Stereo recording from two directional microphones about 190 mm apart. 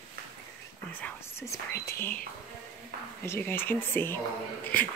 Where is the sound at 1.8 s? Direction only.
15° left (ahead or behind).